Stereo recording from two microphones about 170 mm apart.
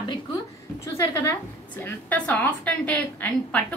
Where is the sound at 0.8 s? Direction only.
15° left (ahead or behind).